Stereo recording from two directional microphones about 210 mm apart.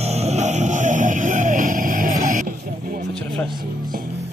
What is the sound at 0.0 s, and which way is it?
Music, 30° right (ahead or behind).